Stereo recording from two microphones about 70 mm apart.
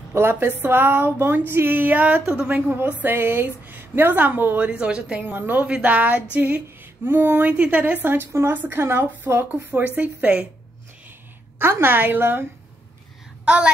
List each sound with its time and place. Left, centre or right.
0.1 s speech: right
4.6 s a woman's voice: centre
11.5 s a woman's voice: right